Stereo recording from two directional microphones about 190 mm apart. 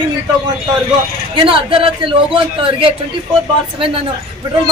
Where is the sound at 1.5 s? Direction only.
30° right (ahead or behind).